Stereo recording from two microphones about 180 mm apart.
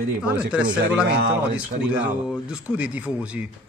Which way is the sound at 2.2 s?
5° right (ahead or behind).